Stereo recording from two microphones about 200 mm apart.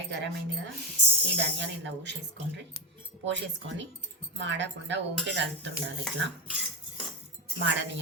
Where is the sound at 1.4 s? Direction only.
60° right (ahead or behind).